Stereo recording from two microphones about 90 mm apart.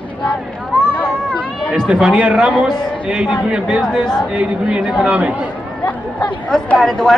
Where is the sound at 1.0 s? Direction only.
15° left (ahead or behind).